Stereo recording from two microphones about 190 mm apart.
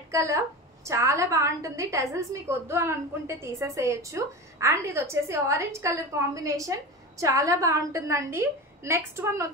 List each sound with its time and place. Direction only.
0.1 s a woman's voice: 15° right (ahead or behind)